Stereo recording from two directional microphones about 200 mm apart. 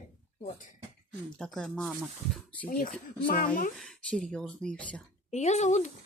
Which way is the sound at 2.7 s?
45° left (ahead or behind).